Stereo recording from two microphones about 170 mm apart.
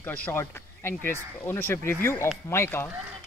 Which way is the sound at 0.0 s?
10° left (ahead or behind).